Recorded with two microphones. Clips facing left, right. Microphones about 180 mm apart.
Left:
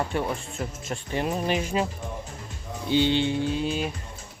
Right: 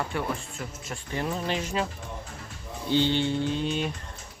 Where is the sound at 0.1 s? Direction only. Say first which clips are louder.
Left 3 dB; 25° left (ahead or behind).